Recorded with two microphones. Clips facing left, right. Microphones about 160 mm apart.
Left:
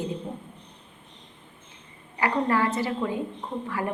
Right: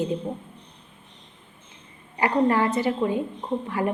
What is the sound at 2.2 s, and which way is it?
A woman's voice, 20° right (ahead or behind).